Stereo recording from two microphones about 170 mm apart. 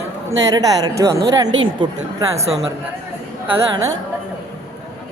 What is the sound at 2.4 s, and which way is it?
Speech, 40° right (ahead or behind).